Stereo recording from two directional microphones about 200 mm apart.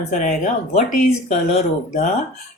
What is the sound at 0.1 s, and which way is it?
Speech, 35° left (ahead or behind).